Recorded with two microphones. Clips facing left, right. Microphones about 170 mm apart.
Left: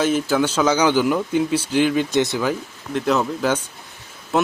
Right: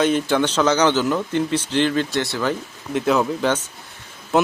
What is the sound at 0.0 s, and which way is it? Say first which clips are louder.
Speech: even; 5° left (ahead or behind).